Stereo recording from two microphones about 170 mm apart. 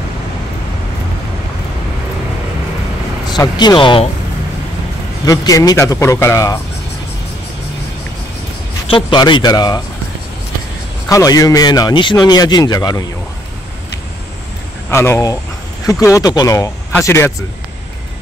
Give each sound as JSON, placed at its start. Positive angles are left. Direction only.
{"t": 3.3, "sound": "a man's voice", "side_deg": 25}
{"t": 5.2, "sound": "a man's voice", "side_deg": 20}
{"t": 8.8, "sound": "a man's voice", "side_deg": 30}
{"t": 11.1, "sound": "a man's voice", "side_deg": 20}
{"t": 14.9, "sound": "a man's voice", "side_deg": 15}